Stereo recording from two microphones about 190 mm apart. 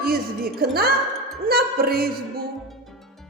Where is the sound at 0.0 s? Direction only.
55° right (ahead or behind).